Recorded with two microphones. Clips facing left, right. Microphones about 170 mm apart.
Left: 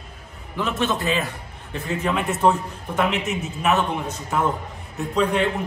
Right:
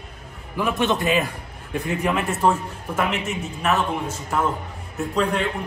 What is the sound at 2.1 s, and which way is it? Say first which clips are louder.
Speech: left 1 dB; centre (ahead or behind).